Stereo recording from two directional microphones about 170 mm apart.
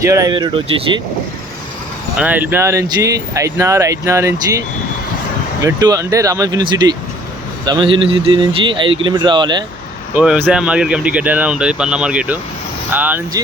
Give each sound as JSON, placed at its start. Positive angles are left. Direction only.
{"t": 0.0, "sound": "a man's voice", "side_deg": -20}
{"t": 2.1, "sound": "speech", "side_deg": -10}
{"t": 5.6, "sound": "a man's voice", "side_deg": -20}
{"t": 10.2, "sound": "speech", "side_deg": -10}